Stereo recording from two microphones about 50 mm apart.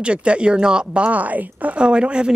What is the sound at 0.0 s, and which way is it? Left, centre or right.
Speech, right.